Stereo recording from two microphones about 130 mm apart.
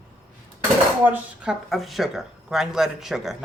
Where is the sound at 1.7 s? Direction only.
Centre (ahead or behind).